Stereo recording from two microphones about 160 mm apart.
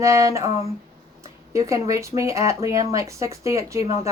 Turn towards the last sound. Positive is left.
turn(degrees=-20)  # may be behind; listen again after turning